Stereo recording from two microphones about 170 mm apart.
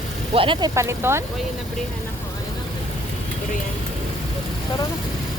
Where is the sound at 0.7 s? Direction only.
15° right (ahead or behind).